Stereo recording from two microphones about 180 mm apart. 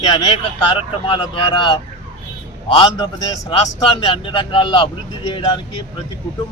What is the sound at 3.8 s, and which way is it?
A man's voice, 30° left (ahead or behind).